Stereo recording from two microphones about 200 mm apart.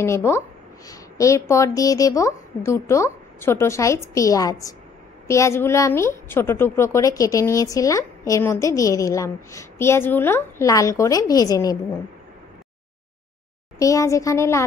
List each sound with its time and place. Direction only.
0.0 s a woman's voice: 15° left (ahead or behind)
13.7 s a woman's voice: 15° left (ahead or behind)